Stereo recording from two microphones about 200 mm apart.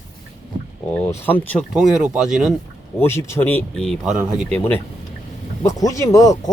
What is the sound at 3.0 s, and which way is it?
Speech, 10° left (ahead or behind).